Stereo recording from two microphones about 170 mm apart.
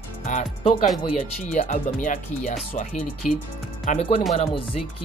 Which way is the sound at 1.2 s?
40° left (ahead or behind).